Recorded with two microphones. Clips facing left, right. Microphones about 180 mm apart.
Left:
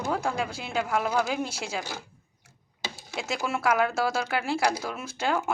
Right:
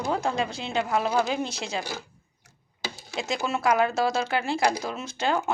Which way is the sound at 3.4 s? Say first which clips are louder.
Even; 20° right (ahead or behind).